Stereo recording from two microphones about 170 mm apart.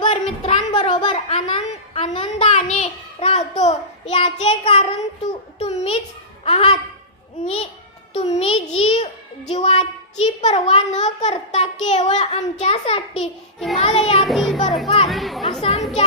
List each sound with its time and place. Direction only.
0.0 s a sound: 35° left (ahead or behind)
2.7 s child singing: 40° left (ahead or behind)
5.2 s a sound: 40° left (ahead or behind)
7.4 s babbling: 35° left (ahead or behind)
8.1 s a sound: 35° left (ahead or behind)
13.7 s child singing: 35° left (ahead or behind)
14.3 s children playing: centre (ahead or behind)
14.8 s chatter: 35° left (ahead or behind)
15.1 s chatter: centre (ahead or behind)